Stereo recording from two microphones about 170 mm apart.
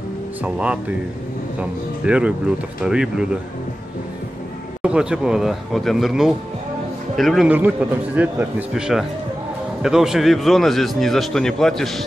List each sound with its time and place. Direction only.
0.4 s a man's voice: 10° right (ahead or behind)
4.8 s a man's voice: 5° right (ahead or behind)